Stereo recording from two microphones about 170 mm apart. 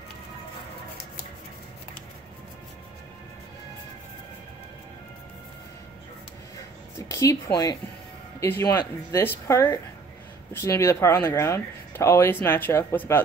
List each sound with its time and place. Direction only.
7.0 s a woman's voice: 20° left (ahead or behind)